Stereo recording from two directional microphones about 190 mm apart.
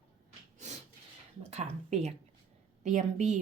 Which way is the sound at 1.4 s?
35° right (ahead or behind).